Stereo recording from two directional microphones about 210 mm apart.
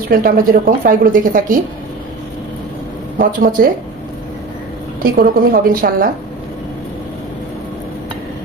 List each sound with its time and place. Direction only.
0.1 s a woman's voice: 45° right (ahead or behind)
3.2 s a woman's voice: 40° right (ahead or behind)
5.1 s a woman's voice: 45° right (ahead or behind)